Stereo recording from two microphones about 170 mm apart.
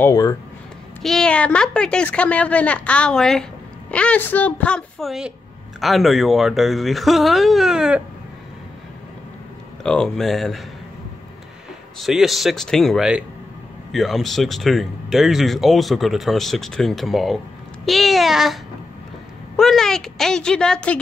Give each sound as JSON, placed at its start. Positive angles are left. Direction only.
{"t": 0.0, "sound": "speech", "side_deg": 20}
{"t": 1.0, "sound": "speech", "side_deg": 5}
{"t": 9.8, "sound": "speech", "side_deg": 5}
{"t": 12.0, "sound": "a woman's voice", "side_deg": 0}